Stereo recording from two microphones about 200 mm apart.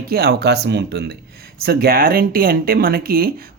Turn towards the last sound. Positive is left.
turn(degrees=-50)  # may be behind; listen again after turning